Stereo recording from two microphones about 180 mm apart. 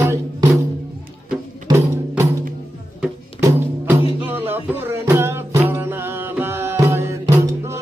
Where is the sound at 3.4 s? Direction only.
15° right (ahead or behind).